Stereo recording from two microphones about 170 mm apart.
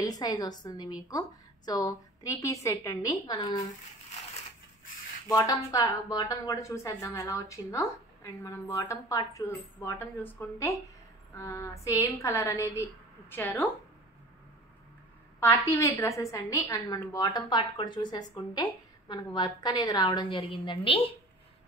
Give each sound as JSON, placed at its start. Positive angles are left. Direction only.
{"t": 0.0, "sound": "a woman's voice", "side_deg": 20}
{"t": 5.3, "sound": "a woman's voice", "side_deg": 20}
{"t": 15.4, "sound": "a woman's voice", "side_deg": 20}